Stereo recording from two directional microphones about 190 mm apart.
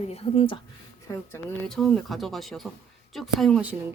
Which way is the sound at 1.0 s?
15° left (ahead or behind).